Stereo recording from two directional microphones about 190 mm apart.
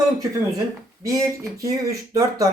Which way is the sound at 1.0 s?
15° right (ahead or behind).